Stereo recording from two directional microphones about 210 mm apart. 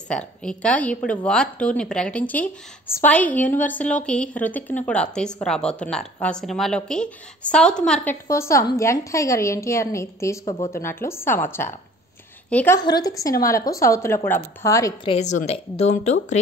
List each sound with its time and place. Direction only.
0.1 s a woman's voice: 5° left (ahead or behind)
10.4 s speech: 25° left (ahead or behind)
10.7 s a woman's voice: 10° left (ahead or behind)
15.1 s speech: 35° left (ahead or behind)